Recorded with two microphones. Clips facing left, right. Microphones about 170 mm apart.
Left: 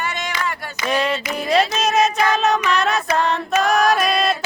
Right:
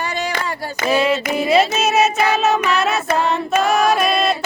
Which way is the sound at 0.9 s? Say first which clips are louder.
Right 4 dB; 5° right (ahead or behind).